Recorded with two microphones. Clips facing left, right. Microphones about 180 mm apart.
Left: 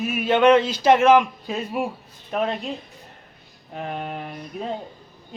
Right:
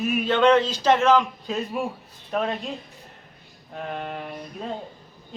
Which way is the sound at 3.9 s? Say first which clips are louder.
Left 1 dB; 5° left (ahead or behind).